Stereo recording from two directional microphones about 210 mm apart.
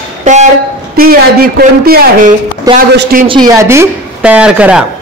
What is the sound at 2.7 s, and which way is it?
A man's voice, 20° right (ahead or behind).